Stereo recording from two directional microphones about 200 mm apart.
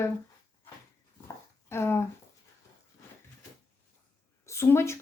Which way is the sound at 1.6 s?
10° left (ahead or behind).